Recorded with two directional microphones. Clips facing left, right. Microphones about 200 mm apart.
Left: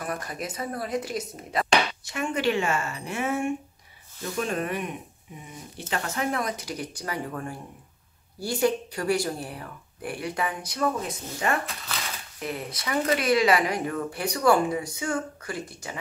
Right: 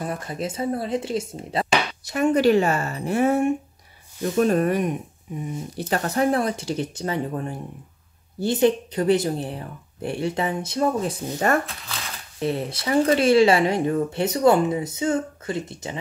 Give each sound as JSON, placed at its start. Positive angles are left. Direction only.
{"t": 0.0, "sound": "speech", "side_deg": -25}
{"t": 2.0, "sound": "a woman's voice", "side_deg": -40}
{"t": 12.4, "sound": "speech", "side_deg": -30}